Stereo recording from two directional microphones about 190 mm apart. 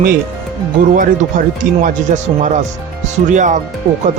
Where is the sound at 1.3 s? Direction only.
45° right (ahead or behind).